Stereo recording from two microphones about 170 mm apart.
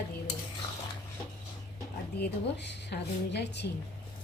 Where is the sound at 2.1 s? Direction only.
80° left.